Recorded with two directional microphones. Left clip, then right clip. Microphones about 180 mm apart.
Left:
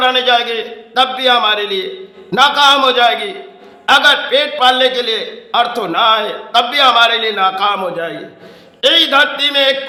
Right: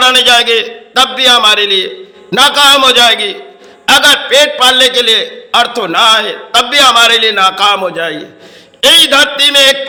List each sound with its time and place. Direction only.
0.0 s a man's voice: 15° right (ahead or behind)